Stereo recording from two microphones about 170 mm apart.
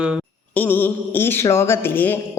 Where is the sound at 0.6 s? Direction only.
10° left (ahead or behind).